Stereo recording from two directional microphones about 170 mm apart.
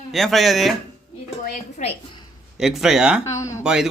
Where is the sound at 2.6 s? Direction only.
Centre (ahead or behind).